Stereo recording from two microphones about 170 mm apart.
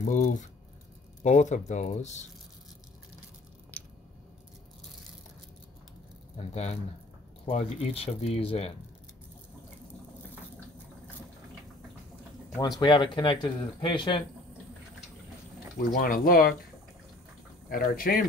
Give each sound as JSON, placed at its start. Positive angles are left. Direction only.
{"t": 0.0, "sound": "speech", "side_deg": 50}
{"t": 6.3, "sound": "speech", "side_deg": 40}
{"t": 12.5, "sound": "speech", "side_deg": 20}
{"t": 15.9, "sound": "speech", "side_deg": 55}
{"t": 17.6, "sound": "speech", "side_deg": 55}